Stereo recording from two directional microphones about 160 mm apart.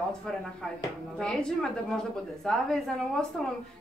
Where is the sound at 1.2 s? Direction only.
5° left (ahead or behind).